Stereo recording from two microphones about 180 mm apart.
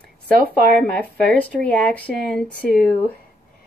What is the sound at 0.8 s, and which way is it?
Speech, 5° left (ahead or behind).